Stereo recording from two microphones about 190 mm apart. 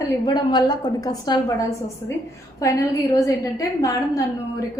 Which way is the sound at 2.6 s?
15° left (ahead or behind).